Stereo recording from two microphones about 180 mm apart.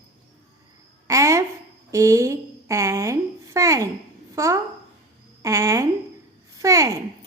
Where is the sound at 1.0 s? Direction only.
15° right (ahead or behind).